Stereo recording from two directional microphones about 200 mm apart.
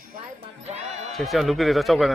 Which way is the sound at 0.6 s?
35° right (ahead or behind).